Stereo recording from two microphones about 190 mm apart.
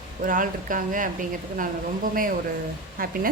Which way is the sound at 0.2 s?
45° right (ahead or behind).